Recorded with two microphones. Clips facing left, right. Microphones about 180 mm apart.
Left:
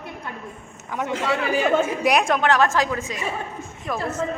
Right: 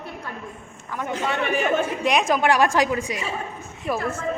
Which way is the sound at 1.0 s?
90° left.